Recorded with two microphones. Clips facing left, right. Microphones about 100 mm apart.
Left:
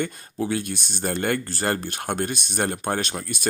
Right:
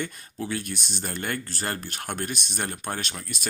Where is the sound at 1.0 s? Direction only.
35° left (ahead or behind).